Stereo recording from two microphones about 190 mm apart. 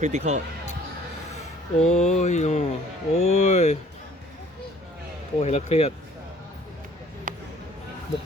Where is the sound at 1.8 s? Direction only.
35° left (ahead or behind).